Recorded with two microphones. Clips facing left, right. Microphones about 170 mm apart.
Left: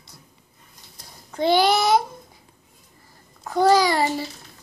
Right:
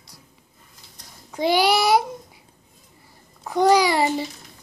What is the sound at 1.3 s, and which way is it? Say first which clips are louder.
Child singing: left 1 dB; 10° right (ahead or behind).